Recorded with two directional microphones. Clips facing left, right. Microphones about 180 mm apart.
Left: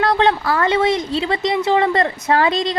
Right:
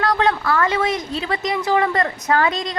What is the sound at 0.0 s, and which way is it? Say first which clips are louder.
Speech: left 3 dB; 30° left (ahead or behind).